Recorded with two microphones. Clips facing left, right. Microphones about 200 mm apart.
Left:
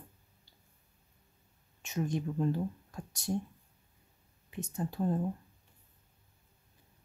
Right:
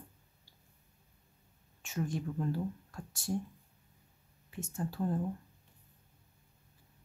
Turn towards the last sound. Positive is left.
turn(degrees=20)  # may be behind; listen again after turning